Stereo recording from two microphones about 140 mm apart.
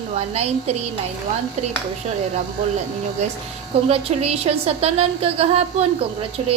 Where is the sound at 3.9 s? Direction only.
45° right (ahead or behind).